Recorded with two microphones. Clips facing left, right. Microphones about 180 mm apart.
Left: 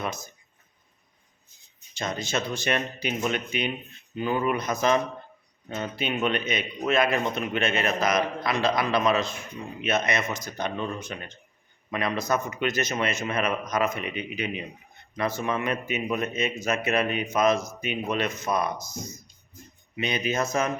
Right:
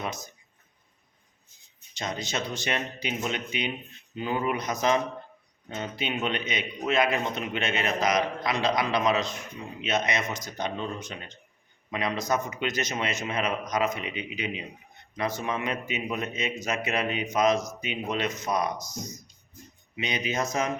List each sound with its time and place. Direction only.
0.0 s a man's voice: 20° right (ahead or behind)
1.9 s a man's voice: 20° right (ahead or behind)
18.9 s speech: 25° left (ahead or behind)
20.0 s a man's voice: 20° right (ahead or behind)